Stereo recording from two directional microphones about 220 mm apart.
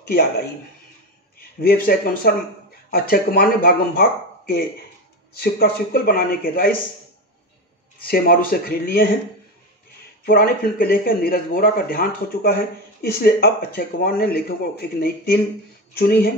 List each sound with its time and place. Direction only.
0.1 s speech: 45° left (ahead or behind)
1.6 s speech: 40° left (ahead or behind)
8.0 s a man's voice: 40° left (ahead or behind)
10.2 s a man's voice: 45° left (ahead or behind)